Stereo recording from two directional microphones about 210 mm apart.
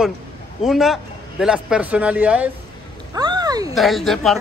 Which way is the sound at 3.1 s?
20° right (ahead or behind).